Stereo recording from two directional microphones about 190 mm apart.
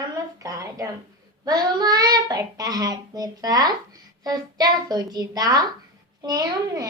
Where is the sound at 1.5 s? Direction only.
20° right (ahead or behind).